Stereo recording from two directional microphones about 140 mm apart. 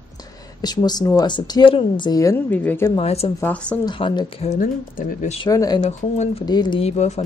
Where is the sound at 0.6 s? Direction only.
30° left (ahead or behind).